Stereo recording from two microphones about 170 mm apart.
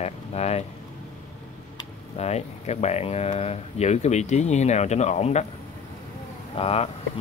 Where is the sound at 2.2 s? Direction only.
40° left (ahead or behind).